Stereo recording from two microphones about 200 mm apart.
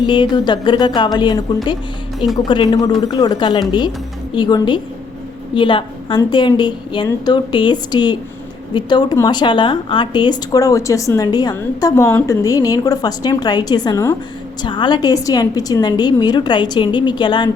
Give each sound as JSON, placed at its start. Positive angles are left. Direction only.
{"t": 0.0, "sound": "a woman's voice", "side_deg": 20}
{"t": 2.1, "sound": "speech", "side_deg": 0}
{"t": 2.5, "sound": "a woman's voice", "side_deg": 20}